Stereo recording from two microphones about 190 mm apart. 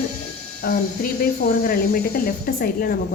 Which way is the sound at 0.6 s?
50° left (ahead or behind).